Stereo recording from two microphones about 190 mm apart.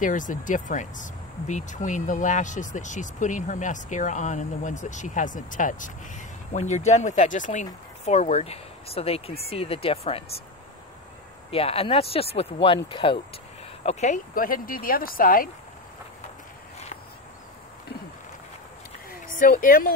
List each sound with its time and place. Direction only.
0.0 s speech: 45° left (ahead or behind)
11.5 s speech: 30° left (ahead or behind)
13.8 s speech: 35° left (ahead or behind)
19.0 s a sound: 50° left (ahead or behind)